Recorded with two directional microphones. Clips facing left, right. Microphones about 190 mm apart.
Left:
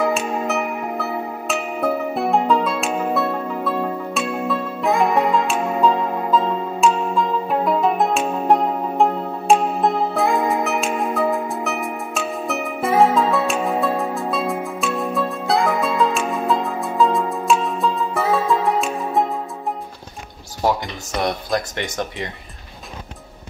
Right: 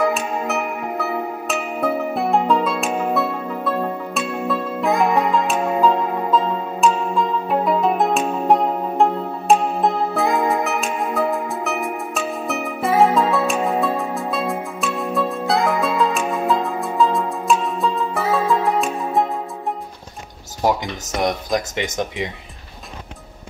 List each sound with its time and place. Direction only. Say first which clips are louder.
0.0 s music: even; centre (ahead or behind)
21.2 s speech: right 1 dB; 15° right (ahead or behind)